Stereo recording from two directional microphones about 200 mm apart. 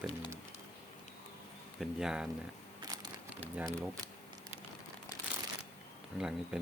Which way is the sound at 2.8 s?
20° right (ahead or behind).